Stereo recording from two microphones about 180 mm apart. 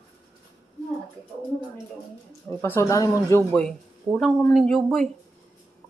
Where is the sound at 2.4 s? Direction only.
15° left (ahead or behind).